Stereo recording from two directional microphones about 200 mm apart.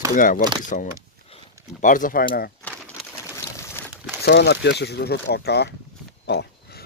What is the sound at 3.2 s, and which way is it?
Pigeon, 15° left (ahead or behind).